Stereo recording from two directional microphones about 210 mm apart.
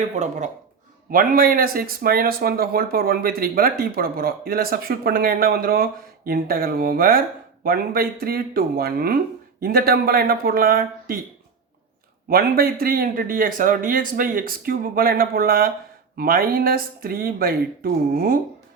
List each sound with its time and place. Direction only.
0.2 s speech: 35° right (ahead or behind)
12.3 s speech: 45° right (ahead or behind)